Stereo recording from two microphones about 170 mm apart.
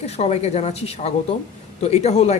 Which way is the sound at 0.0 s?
40° left (ahead or behind).